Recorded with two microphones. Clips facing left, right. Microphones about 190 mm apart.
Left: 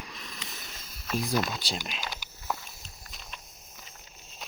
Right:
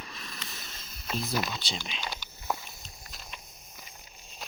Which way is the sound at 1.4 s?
5° left (ahead or behind).